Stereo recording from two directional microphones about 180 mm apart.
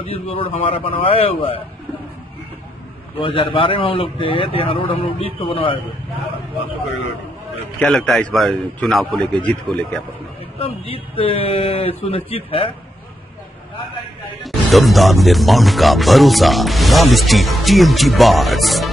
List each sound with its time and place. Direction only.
0.0 s speech: 30° left (ahead or behind)
3.2 s a man's voice: 30° left (ahead or behind)
7.8 s speech: centre (ahead or behind)
10.6 s speech: 30° left (ahead or behind)
14.4 s speech: centre (ahead or behind)